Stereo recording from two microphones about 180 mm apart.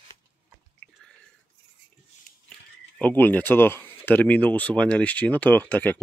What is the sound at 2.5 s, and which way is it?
Speech, 5° left (ahead or behind).